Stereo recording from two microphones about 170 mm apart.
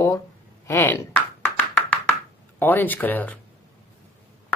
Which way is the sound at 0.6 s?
15° left (ahead or behind).